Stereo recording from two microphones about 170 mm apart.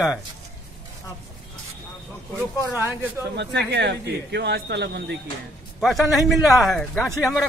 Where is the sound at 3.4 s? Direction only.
90° right.